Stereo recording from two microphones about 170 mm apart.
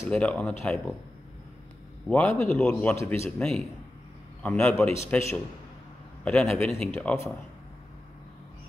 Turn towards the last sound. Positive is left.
turn(degrees=10)  # may be behind; listen again after turning